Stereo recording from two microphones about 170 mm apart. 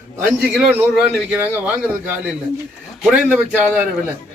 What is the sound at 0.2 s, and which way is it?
A man's voice, 10° right (ahead or behind).